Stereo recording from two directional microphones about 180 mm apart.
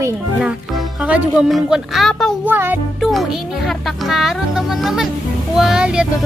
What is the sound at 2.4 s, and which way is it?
Speech, 10° right (ahead or behind).